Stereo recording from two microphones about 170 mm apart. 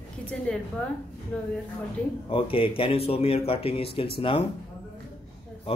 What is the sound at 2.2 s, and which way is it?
Speech, 30° left (ahead or behind).